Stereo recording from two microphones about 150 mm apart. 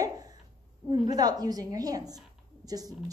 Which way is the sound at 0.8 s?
25° right (ahead or behind).